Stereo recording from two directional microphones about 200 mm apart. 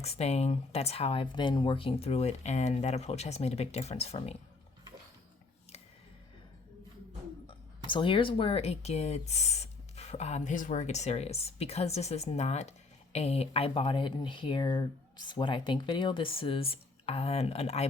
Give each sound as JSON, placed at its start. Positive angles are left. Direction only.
{"t": 0.0, "sound": "speech", "side_deg": 30}
{"t": 7.4, "sound": "speech", "side_deg": 25}